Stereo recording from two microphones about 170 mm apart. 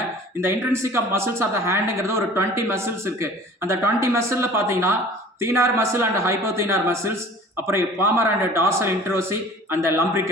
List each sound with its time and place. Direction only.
0.4 s speech: 15° right (ahead or behind)